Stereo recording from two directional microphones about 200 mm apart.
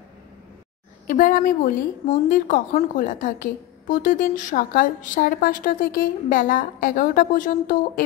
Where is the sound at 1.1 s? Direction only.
40° left (ahead or behind).